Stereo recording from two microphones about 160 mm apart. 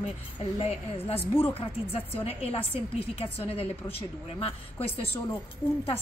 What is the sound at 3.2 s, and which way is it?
Speech, 40° left (ahead or behind).